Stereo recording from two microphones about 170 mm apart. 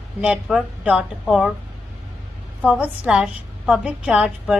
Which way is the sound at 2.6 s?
10° right (ahead or behind).